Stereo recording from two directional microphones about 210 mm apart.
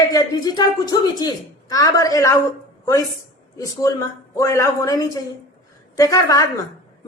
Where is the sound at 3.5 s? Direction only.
15° left (ahead or behind).